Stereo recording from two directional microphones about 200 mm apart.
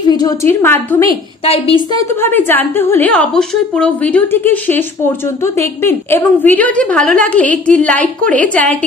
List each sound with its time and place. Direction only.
0.1 s a woman's voice: 20° left (ahead or behind)
1.4 s a woman's voice: 30° left (ahead or behind)
2.2 s a woman's voice: 10° left (ahead or behind)